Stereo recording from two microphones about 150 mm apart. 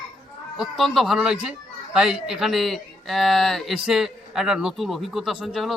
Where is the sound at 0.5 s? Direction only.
Centre (ahead or behind).